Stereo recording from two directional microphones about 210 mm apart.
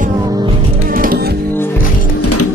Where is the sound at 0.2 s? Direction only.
20° right (ahead or behind).